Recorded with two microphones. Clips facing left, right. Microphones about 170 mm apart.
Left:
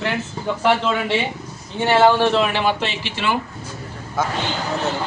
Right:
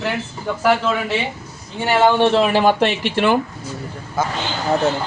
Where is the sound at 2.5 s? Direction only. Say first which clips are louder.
Right 6 dB; 50° right (ahead or behind).